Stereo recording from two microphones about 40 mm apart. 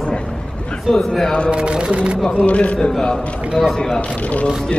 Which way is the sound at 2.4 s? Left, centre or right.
Left.